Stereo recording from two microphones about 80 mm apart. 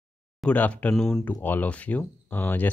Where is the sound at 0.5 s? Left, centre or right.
Centre.